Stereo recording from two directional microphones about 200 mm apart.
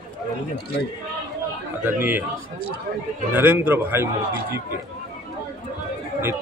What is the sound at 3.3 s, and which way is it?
A man's voice, 10° right (ahead or behind).